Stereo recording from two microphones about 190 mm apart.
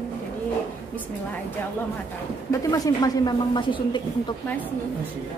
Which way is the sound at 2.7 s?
20° left (ahead or behind).